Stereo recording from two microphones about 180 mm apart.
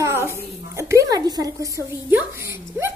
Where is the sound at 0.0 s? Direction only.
15° right (ahead or behind).